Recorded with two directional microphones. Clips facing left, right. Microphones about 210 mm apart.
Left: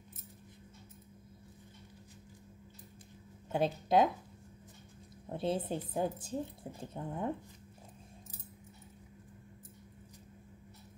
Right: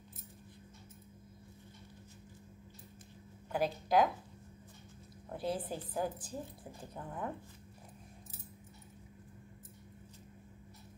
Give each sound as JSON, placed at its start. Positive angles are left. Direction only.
{"t": 3.5, "sound": "a woman's voice", "side_deg": 25}
{"t": 5.2, "sound": "a woman's voice", "side_deg": 25}